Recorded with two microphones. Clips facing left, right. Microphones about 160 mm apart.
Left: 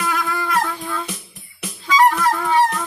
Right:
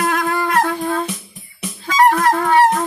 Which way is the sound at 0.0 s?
60° right (ahead or behind).